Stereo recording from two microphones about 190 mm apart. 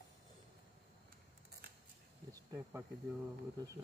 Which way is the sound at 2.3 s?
15° right (ahead or behind).